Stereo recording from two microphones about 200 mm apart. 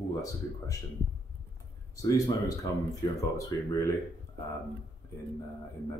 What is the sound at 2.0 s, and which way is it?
Speech, 15° left (ahead or behind).